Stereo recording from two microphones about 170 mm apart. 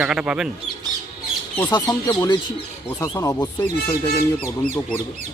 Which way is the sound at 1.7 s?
25° left (ahead or behind).